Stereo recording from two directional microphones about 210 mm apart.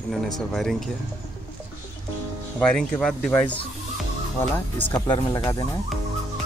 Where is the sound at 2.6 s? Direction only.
5° left (ahead or behind).